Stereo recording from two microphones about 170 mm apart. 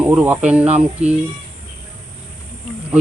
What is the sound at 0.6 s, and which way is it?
Speech, 40° right (ahead or behind).